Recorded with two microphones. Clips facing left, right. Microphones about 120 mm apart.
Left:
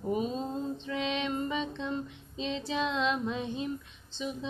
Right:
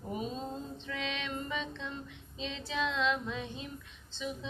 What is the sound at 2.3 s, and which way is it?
Female singing, 25° left (ahead or behind).